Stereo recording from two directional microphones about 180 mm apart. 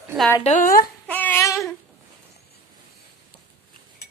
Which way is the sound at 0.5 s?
50° left (ahead or behind).